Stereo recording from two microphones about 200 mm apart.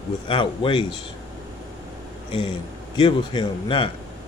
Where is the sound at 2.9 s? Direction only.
25° left (ahead or behind).